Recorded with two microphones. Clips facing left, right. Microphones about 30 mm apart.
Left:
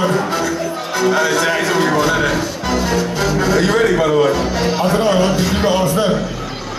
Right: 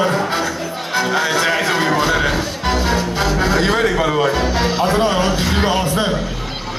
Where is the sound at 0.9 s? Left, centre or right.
Right.